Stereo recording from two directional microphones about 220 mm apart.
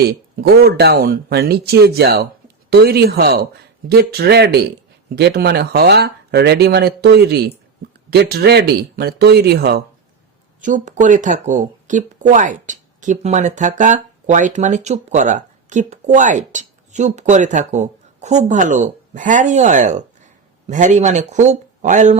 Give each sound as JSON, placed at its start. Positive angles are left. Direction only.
{"t": 0.1, "sound": "speech", "side_deg": -45}
{"t": 10.6, "sound": "speech", "side_deg": -35}